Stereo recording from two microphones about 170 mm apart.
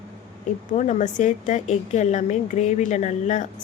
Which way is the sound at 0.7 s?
45° left (ahead or behind).